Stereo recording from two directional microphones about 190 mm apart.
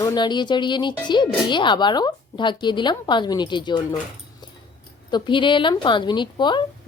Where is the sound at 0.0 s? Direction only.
20° left (ahead or behind).